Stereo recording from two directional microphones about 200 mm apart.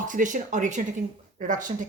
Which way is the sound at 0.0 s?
40° right (ahead or behind).